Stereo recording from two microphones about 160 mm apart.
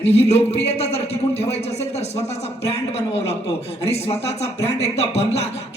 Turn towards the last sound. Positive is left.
turn(degrees=40)  # may be behind; listen again after turning